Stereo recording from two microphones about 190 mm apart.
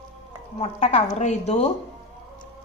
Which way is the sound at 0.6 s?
35° left (ahead or behind).